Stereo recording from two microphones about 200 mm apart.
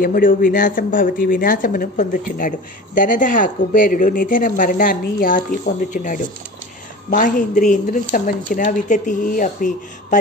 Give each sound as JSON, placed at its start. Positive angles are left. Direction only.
{"t": 0.0, "sound": "speech", "side_deg": 45}